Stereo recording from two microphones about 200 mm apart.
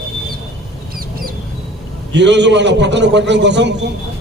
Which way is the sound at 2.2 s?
60° right (ahead or behind).